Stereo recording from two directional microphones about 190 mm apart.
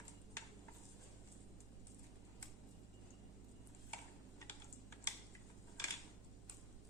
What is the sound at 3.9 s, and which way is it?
Tick-tock, 10° left (ahead or behind).